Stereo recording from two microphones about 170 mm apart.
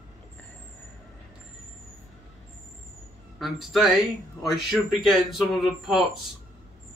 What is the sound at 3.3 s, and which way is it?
Speech, centre (ahead or behind).